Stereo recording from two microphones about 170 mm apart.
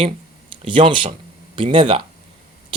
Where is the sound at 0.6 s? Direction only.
30° right (ahead or behind).